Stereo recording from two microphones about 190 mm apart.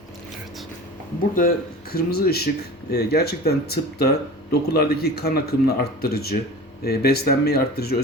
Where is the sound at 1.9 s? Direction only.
55° left (ahead or behind).